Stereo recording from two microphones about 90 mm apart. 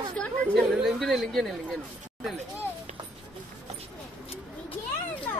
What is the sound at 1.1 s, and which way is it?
Speech, centre (ahead or behind).